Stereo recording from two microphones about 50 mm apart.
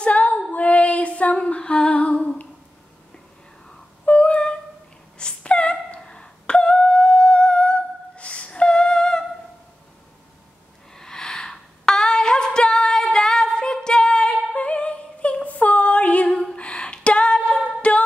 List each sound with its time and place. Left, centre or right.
0.0 s female singing: left
3.6 s a sound: left
8.5 s music: centre
11.0 s female singing: centre; by 16.3 s left
16.5 s a sound: left
17.8 s music: left